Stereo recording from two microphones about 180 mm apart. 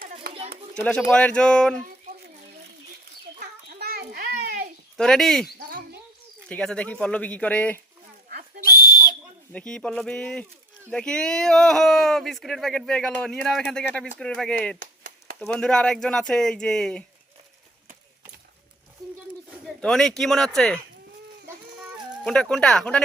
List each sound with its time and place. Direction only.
1.1 s speech: 5° left (ahead or behind)
3.4 s a sound: 60° right (ahead or behind)
4.9 s speech: 5° left (ahead or behind)
5.5 s a sound: 55° right (ahead or behind)
6.5 s speech: 5° left (ahead or behind)
9.5 s speech: 5° left (ahead or behind)
14.8 s a sound: 50° right (ahead or behind)
15.4 s speech: 5° left (ahead or behind)
19.6 s speech: centre (ahead or behind)
22.2 s speech: 5° left (ahead or behind)